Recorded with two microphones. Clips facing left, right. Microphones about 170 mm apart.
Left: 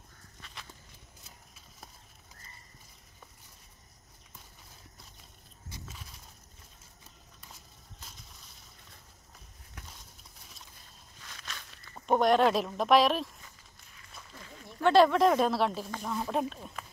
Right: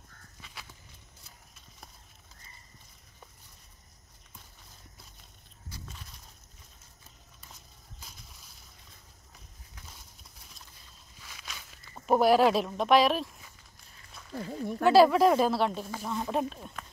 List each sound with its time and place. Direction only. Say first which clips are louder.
5.9 s a sound: even; 5° left (ahead or behind)
8.0 s boat: even; centre (ahead or behind)
11.2 s walk: even; 5° right (ahead or behind)
14.3 s speech: right 17 dB; 35° right (ahead or behind)
14.8 s speech: right 2 dB; 5° right (ahead or behind)